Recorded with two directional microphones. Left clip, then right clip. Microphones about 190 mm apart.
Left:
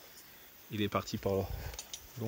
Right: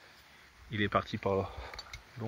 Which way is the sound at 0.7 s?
5° right (ahead or behind).